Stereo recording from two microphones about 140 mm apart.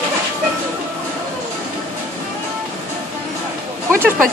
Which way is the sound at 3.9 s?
15° right (ahead or behind).